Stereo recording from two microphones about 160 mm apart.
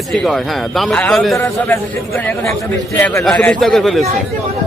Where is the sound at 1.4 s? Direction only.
10° left (ahead or behind).